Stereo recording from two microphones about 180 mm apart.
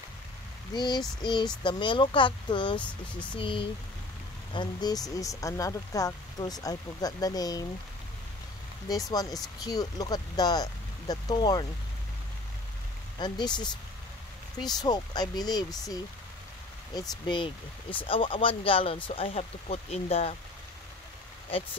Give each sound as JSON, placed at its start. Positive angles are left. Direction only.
{"t": 0.7, "sound": "speech", "side_deg": 25}
{"t": 2.8, "sound": "speech", "side_deg": 5}
{"t": 3.3, "sound": "speech", "side_deg": 30}
{"t": 9.1, "sound": "speech", "side_deg": 20}
{"t": 13.2, "sound": "speech", "side_deg": 25}